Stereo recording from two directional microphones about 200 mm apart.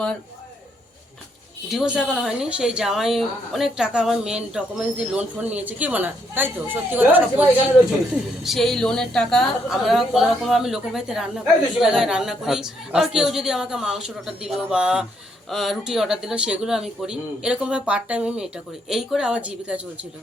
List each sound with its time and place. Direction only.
1.7 s speech: 5° right (ahead or behind)
8.4 s speech: centre (ahead or behind)